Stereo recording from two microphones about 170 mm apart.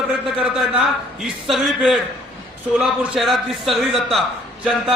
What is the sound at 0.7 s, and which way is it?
A man's voice, centre (ahead or behind).